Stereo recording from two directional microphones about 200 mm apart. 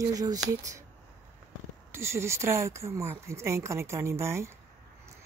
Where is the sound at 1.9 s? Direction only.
15° right (ahead or behind).